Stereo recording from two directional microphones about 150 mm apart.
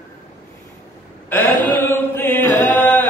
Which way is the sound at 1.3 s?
15° left (ahead or behind).